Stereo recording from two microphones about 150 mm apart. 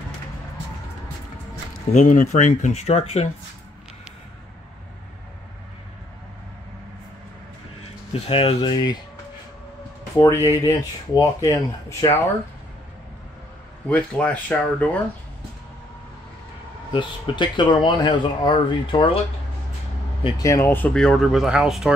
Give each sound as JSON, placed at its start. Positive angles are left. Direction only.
{"t": 2.0, "sound": "speech", "side_deg": 55}
{"t": 7.8, "sound": "speech", "side_deg": 40}
{"t": 10.3, "sound": "speech", "side_deg": 20}
{"t": 13.8, "sound": "speech", "side_deg": 10}
{"t": 16.9, "sound": "speech", "side_deg": 30}
{"t": 20.2, "sound": "speech", "side_deg": 25}